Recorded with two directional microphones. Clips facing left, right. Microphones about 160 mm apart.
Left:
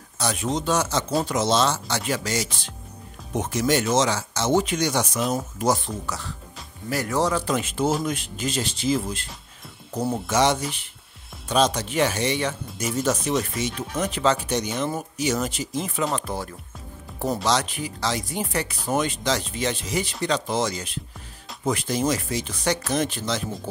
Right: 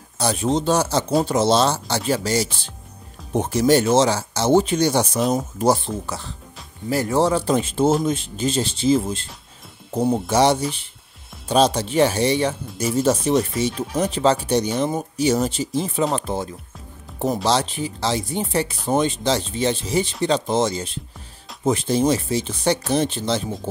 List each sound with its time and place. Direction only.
0.2 s speech: 30° right (ahead or behind)